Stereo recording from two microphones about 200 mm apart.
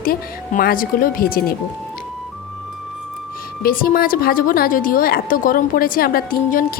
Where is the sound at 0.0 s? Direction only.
45° left (ahead or behind).